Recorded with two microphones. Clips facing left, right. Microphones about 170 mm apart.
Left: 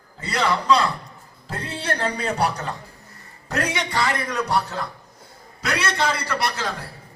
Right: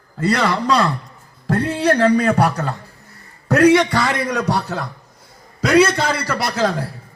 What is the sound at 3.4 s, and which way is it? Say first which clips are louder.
A man's voice: right 14 dB; 75° right (ahead or behind).